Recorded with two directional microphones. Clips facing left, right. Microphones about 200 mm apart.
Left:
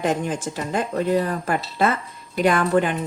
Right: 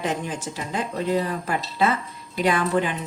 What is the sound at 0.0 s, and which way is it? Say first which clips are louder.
Speech: left 4 dB; 50° left (ahead or behind).